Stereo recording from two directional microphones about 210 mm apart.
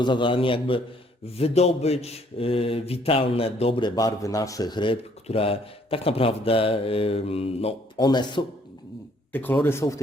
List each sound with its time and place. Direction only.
0.0 s speech: 20° left (ahead or behind)
9.3 s speech: 10° left (ahead or behind)